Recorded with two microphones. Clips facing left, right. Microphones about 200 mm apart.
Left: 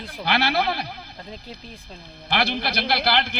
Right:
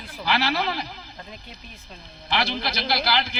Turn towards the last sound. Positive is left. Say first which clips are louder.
# left 2 dB
turn(degrees=60)  # may be behind; listen again after turning